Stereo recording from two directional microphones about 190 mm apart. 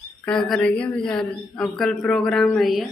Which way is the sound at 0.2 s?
5° left (ahead or behind).